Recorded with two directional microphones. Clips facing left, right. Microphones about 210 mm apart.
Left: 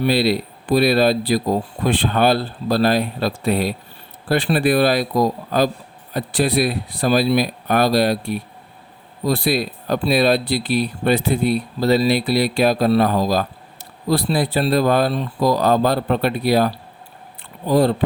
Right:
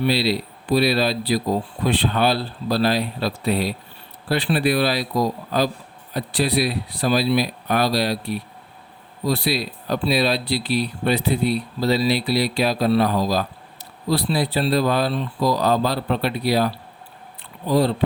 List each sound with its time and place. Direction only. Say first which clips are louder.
0.0 s speech: left 3 dB; 50° left (ahead or behind)